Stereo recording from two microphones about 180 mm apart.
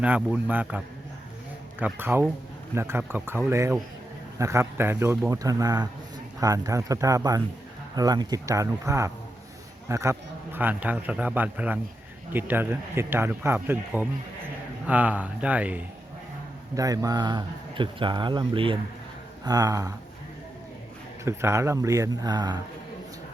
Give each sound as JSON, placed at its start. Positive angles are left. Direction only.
{"t": 0.0, "sound": "a man's voice", "side_deg": -10}
{"t": 1.8, "sound": "a man's voice", "side_deg": -10}
{"t": 16.7, "sound": "speech", "side_deg": -20}
{"t": 21.2, "sound": "a man's voice", "side_deg": -15}